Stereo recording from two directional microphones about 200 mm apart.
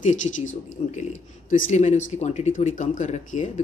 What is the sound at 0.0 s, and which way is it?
Speech, 40° left (ahead or behind).